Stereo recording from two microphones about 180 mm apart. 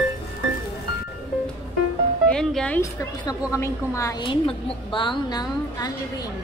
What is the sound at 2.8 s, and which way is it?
A woman's voice, 15° left (ahead or behind).